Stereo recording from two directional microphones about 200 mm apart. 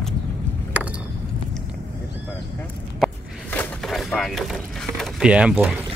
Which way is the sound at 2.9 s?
5° left (ahead or behind).